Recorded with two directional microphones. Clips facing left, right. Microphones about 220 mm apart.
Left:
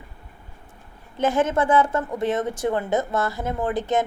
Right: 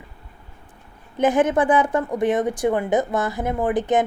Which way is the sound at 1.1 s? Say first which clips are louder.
Right 3 dB; 15° right (ahead or behind).